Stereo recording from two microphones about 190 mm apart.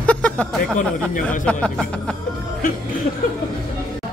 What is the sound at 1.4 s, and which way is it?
Speech, 5° left (ahead or behind).